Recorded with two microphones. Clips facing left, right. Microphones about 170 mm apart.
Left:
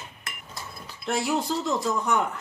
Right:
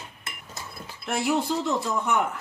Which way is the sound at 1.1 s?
5° right (ahead or behind).